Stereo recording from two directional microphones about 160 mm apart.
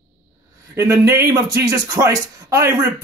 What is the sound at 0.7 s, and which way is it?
Speech, 20° right (ahead or behind).